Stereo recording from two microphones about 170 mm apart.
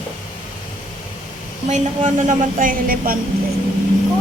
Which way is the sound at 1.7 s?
45° right (ahead or behind).